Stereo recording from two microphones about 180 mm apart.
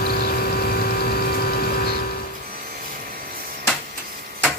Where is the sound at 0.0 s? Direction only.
55° left (ahead or behind).